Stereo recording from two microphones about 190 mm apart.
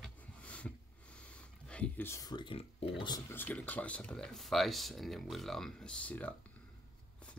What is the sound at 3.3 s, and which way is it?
Speech, 10° left (ahead or behind).